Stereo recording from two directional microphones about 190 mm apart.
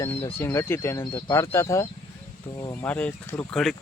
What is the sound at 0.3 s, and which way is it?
Speech, 15° left (ahead or behind).